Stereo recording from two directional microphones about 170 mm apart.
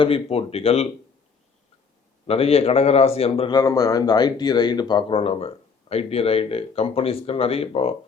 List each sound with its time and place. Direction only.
0.0 s a man's voice: 35° left (ahead or behind)
2.2 s a man's voice: 35° left (ahead or behind)